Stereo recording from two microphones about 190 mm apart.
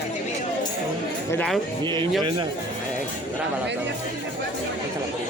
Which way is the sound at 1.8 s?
25° right (ahead or behind).